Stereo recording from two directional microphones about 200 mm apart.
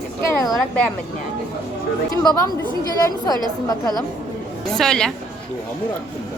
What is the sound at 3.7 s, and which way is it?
Speech, 20° left (ahead or behind).